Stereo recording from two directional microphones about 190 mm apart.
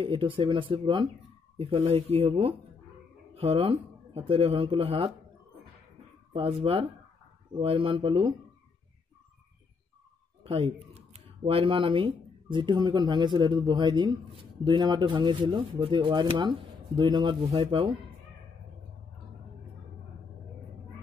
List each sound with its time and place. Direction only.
0.0 s speech: 30° right (ahead or behind)
6.3 s speech: 30° right (ahead or behind)
10.4 s speech: 30° right (ahead or behind)